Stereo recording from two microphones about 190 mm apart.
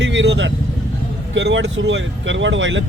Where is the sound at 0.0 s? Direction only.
70° right (ahead or behind).